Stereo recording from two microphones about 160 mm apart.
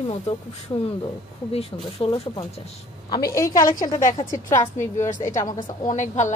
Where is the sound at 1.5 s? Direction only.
35° left (ahead or behind).